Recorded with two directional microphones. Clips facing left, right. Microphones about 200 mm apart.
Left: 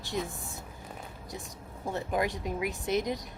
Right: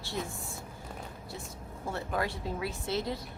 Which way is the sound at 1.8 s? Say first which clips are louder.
Left 3 dB; 15° left (ahead or behind).